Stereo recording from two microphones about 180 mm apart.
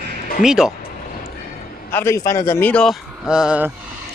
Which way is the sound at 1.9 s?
15° left (ahead or behind).